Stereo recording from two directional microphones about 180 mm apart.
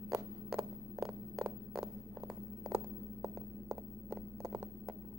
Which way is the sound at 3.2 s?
20° right (ahead or behind).